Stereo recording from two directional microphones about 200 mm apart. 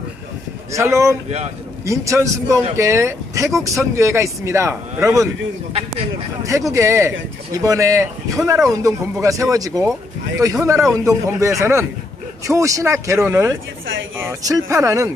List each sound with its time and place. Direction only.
0.7 s speech: 15° right (ahead or behind)
5.7 s speech: 30° right (ahead or behind)
6.7 s speech: 15° right (ahead or behind)